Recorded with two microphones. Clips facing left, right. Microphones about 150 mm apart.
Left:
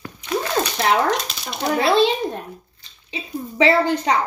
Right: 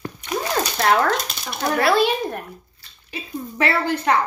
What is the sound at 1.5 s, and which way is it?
A child's voice, 20° left (ahead or behind).